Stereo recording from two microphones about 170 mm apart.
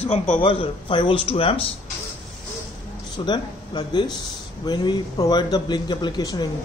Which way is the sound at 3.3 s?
25° left (ahead or behind).